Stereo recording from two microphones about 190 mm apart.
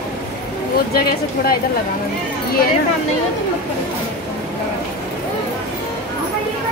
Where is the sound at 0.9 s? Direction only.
55° left (ahead or behind).